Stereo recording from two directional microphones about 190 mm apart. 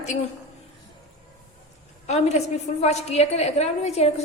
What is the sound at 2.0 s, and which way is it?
A woman's voice, 35° left (ahead or behind).